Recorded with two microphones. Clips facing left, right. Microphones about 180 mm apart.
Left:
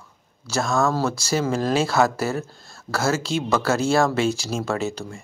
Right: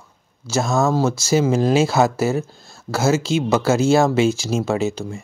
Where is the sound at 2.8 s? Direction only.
25° right (ahead or behind).